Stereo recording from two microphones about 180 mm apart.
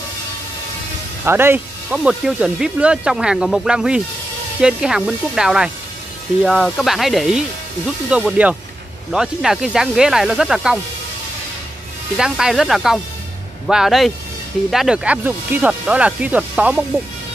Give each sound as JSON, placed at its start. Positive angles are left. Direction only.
{"t": 1.2, "sound": "speech", "side_deg": -10}
{"t": 12.2, "sound": "speech", "side_deg": -5}